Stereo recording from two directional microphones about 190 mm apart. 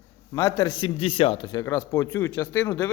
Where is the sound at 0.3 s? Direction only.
20° left (ahead or behind).